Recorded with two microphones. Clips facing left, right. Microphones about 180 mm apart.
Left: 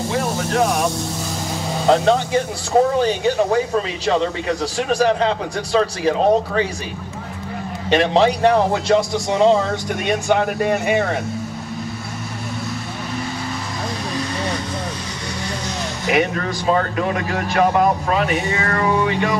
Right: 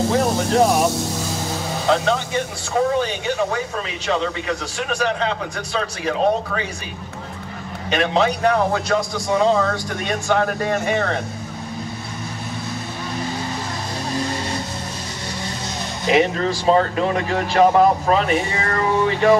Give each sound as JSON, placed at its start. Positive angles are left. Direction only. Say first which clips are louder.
{"t": 0.2, "sound": "a sound", "louder": "right 3 dB", "side_deg": -30}
{"t": 1.9, "sound": "speech", "louder": "left 4 dB", "side_deg": 35}
{"t": 7.9, "sound": "a man's voice", "louder": "left 4 dB", "side_deg": 30}
{"t": 16.1, "sound": "speech", "louder": "right 2 dB", "side_deg": -25}